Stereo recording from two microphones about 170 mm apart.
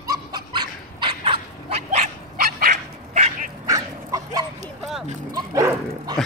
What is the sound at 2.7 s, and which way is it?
Dog, 50° right (ahead or behind).